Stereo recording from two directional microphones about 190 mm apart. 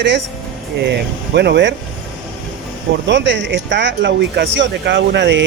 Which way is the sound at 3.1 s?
70° right (ahead or behind).